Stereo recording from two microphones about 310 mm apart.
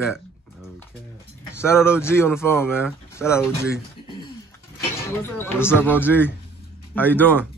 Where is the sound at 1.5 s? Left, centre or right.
Centre.